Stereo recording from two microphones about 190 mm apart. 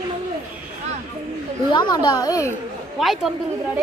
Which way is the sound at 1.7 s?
25° left (ahead or behind).